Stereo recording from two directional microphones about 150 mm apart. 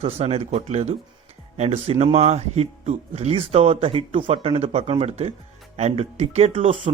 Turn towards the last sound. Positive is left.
turn(degrees=-40)  # may be behind; listen again after turning